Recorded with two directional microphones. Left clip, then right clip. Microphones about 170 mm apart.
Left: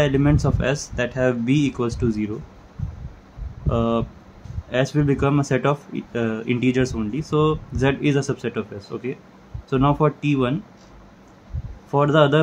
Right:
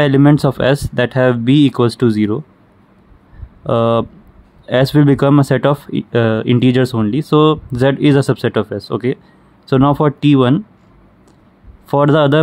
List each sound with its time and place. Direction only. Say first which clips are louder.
0.0 s speech: right 8 dB; 60° right (ahead or behind)
3.6 s speech: right 9 dB; 65° right (ahead or behind)
11.9 s speech: right 5 dB; 65° right (ahead or behind)